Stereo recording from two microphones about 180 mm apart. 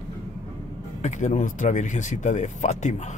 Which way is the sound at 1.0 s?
40° left (ahead or behind).